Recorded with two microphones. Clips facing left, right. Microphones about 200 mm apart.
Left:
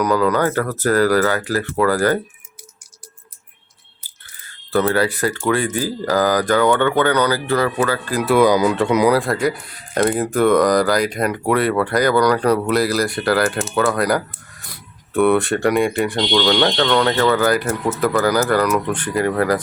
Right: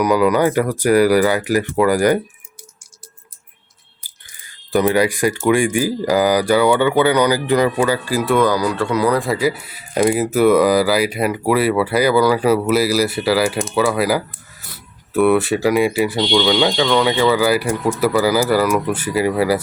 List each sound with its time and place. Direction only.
0.0 s speech: 10° right (ahead or behind)
4.0 s a sound: 15° right (ahead or behind)
5.5 s speech: 15° right (ahead or behind)
8.2 s speech: centre (ahead or behind)
8.4 s speech: 20° left (ahead or behind)
9.1 s speech: centre (ahead or behind)